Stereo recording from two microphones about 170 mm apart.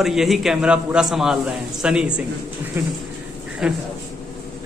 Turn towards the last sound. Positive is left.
turn(degrees=-5)  # may be behind; listen again after turning